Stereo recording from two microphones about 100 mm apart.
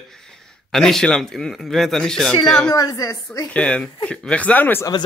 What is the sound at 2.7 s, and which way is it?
Speech, 40° left (ahead or behind).